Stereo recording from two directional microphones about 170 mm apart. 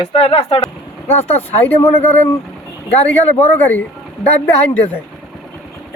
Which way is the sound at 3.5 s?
10° left (ahead or behind).